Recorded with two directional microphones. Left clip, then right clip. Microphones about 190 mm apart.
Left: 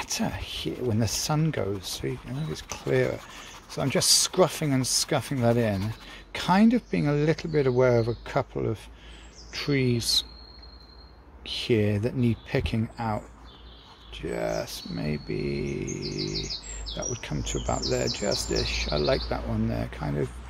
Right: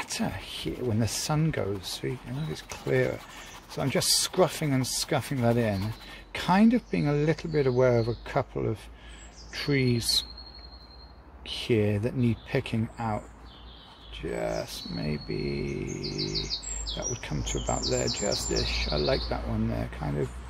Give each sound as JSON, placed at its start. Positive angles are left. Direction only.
{"t": 0.0, "sound": "speech", "side_deg": 15}
{"t": 11.4, "sound": "speech", "side_deg": 10}